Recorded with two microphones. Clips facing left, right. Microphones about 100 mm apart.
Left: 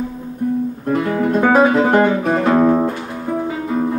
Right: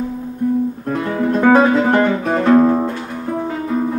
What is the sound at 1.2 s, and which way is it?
Music, 5° left (ahead or behind).